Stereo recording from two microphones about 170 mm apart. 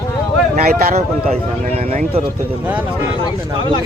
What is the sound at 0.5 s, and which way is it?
Speech, 60° right (ahead or behind).